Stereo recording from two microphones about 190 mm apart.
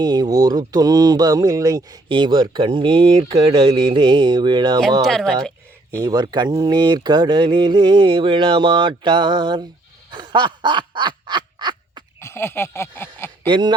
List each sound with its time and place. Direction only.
0.0 s speech: 20° right (ahead or behind)
5.0 s speech: centre (ahead or behind)
6.0 s speech: 20° right (ahead or behind)
10.1 s a sound: 25° right (ahead or behind)
12.2 s a sound: 15° left (ahead or behind)
13.5 s speech: 25° right (ahead or behind)